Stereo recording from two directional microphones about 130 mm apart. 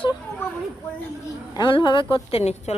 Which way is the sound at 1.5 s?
35° left (ahead or behind).